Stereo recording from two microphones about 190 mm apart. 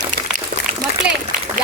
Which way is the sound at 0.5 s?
45° right (ahead or behind).